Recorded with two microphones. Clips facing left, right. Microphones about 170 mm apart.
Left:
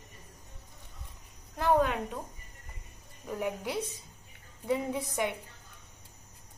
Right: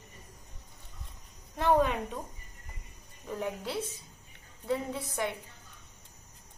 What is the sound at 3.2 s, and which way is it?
A woman's voice, 10° left (ahead or behind).